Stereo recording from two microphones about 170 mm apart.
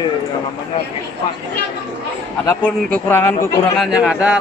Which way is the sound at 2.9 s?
15° left (ahead or behind).